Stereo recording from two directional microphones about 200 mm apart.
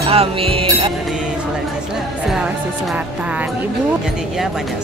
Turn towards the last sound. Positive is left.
turn(degrees=-5)  # may be behind; listen again after turning